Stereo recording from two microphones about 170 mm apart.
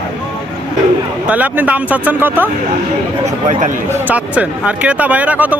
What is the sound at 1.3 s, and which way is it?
Speech, 10° right (ahead or behind).